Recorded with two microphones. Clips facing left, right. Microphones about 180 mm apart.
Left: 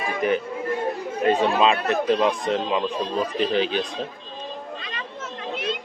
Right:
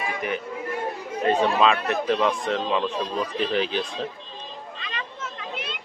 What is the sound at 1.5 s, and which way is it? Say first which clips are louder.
Speech: left 1 dB; 25° left (ahead or behind).